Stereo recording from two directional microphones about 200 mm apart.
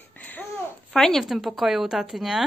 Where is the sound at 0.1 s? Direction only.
10° left (ahead or behind).